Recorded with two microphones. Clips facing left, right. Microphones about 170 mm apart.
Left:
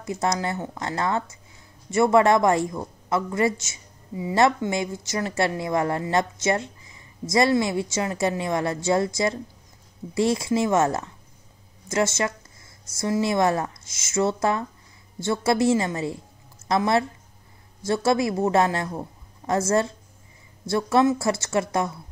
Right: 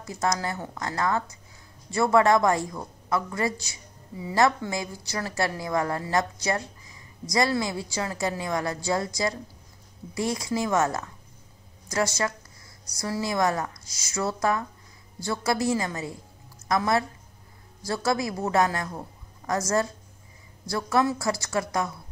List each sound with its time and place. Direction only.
0.0 s a woman's voice: 25° left (ahead or behind)